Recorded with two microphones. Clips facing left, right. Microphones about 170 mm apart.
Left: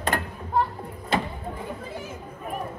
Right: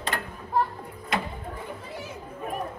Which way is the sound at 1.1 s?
30° left (ahead or behind).